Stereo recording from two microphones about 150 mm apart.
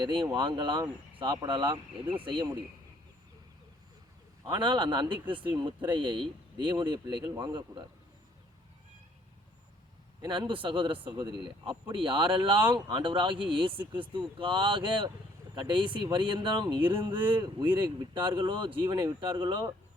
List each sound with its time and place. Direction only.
0.0 s speech: 30° right (ahead or behind)
4.4 s speech: 30° right (ahead or behind)
10.2 s speech: 30° right (ahead or behind)